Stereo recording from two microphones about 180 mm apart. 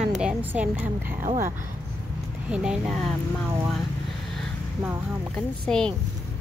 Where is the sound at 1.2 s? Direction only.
45° right (ahead or behind).